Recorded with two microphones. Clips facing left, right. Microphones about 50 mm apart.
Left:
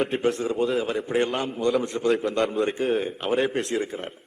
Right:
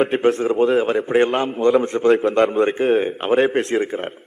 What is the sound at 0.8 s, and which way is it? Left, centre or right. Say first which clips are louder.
A man's voice: right 7 dB; right.